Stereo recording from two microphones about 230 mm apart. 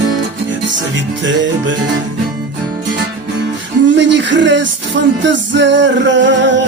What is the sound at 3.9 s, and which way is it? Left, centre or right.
Music, right.